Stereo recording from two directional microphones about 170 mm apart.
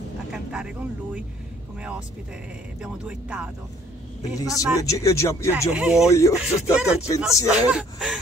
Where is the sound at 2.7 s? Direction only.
5° right (ahead or behind).